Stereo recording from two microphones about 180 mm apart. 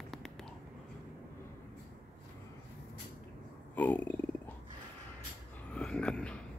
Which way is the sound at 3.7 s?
10° left (ahead or behind).